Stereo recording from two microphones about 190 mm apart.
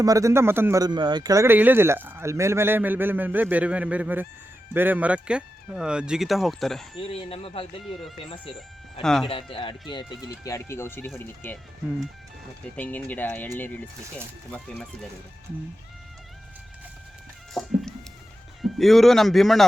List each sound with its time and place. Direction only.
0.0 s speech: 15° right (ahead or behind); by 6.8 s centre (ahead or behind)
7.0 s speech: 30° left (ahead or behind)
9.0 s speech: centre (ahead or behind)
9.3 s speech: 25° left (ahead or behind); by 13.8 s 10° left (ahead or behind)
17.5 s a sound: centre (ahead or behind)
18.6 s speech: centre (ahead or behind)